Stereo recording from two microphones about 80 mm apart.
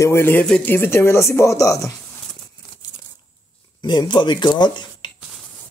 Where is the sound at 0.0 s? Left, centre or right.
Left.